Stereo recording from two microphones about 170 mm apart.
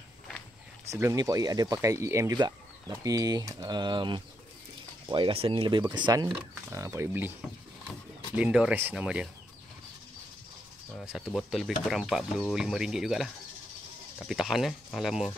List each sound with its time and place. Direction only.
0.9 s speech: 20° right (ahead or behind)
11.0 s speech: centre (ahead or behind)